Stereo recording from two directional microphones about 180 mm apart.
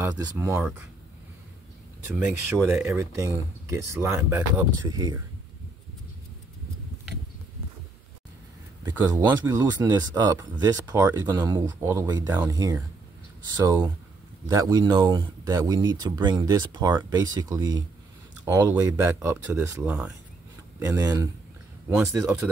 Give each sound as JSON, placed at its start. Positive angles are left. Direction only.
{"t": 0.0, "sound": "speech", "side_deg": -15}
{"t": 2.1, "sound": "speech", "side_deg": -10}
{"t": 8.8, "sound": "speech", "side_deg": -25}
{"t": 14.5, "sound": "speech", "side_deg": -20}